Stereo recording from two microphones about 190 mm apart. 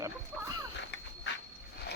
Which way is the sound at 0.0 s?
20° right (ahead or behind).